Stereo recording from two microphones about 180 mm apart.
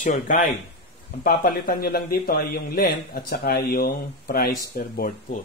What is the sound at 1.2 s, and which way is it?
A man's voice, 55° left (ahead or behind).